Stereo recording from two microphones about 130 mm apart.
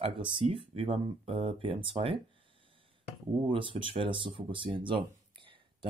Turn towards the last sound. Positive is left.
turn(degrees=-40)  # may be behind; listen again after turning